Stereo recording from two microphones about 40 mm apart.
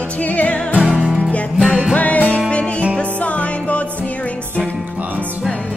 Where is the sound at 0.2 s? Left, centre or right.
Left.